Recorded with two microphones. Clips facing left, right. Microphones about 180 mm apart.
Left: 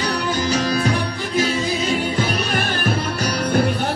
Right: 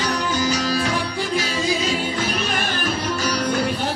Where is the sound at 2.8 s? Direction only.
55° left (ahead or behind).